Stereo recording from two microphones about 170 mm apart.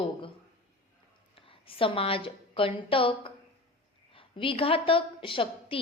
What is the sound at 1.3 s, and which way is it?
A woman's voice, 30° left (ahead or behind).